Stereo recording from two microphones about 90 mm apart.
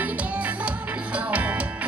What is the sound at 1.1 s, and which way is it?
Music, 15° right (ahead or behind).